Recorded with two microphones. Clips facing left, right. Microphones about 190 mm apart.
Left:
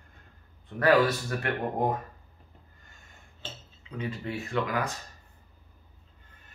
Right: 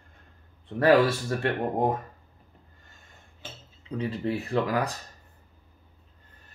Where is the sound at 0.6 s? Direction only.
30° right (ahead or behind).